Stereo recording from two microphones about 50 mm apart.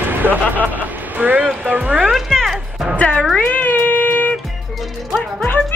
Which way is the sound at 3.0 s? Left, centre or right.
Left.